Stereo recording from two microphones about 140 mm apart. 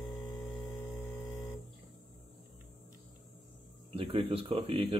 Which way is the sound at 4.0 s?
40° right (ahead or behind).